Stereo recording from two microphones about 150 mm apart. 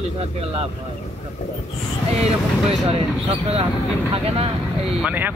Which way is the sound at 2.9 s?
40° right (ahead or behind).